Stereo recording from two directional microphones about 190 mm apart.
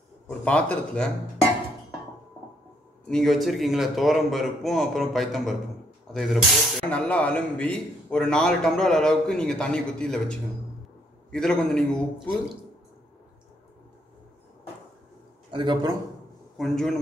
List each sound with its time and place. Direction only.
0.5 s speech: 5° left (ahead or behind)
3.1 s a man's voice: centre (ahead or behind)
11.3 s a man's voice: 5° left (ahead or behind)
15.5 s a man's voice: 25° right (ahead or behind)
16.5 s a man's voice: centre (ahead or behind)